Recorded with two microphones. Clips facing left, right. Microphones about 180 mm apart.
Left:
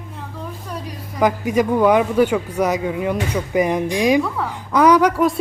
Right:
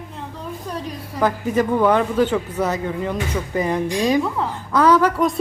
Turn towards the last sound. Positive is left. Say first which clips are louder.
# left 2 dB
turn(degrees=15)  # may be behind; listen again after turning